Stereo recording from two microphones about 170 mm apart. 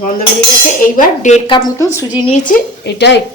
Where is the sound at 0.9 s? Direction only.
45° left (ahead or behind).